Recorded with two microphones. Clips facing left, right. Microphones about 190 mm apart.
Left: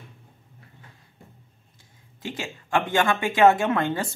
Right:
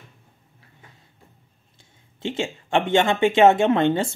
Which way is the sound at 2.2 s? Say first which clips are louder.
Right 7 dB; 25° right (ahead or behind).